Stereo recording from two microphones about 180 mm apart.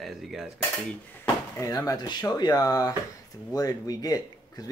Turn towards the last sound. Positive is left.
turn(degrees=20)  # may be behind; listen again after turning